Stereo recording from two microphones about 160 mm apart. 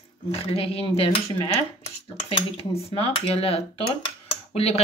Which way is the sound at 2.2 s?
40° left (ahead or behind).